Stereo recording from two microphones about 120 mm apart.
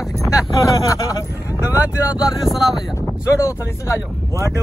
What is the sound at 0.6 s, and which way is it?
Speech, 30° left (ahead or behind).